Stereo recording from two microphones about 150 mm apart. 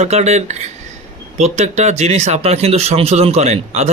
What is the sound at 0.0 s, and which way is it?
Speech, 45° right (ahead or behind).